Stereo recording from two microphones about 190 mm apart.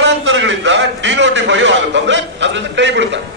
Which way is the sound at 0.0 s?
70° right (ahead or behind).